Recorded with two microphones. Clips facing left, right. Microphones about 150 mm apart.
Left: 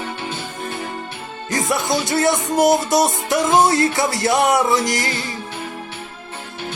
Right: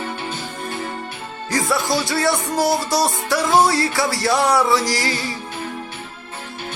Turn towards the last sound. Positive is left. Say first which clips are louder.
# left 1 dB
turn(degrees=20)  # may be behind; listen again after turning